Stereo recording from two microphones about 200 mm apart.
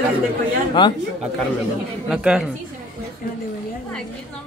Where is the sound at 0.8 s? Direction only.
25° left (ahead or behind).